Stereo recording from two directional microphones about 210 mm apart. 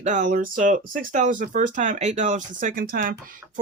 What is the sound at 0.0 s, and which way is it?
Speech, 35° right (ahead or behind).